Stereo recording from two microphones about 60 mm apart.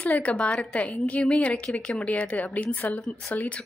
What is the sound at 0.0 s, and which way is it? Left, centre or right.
A woman's voice, left.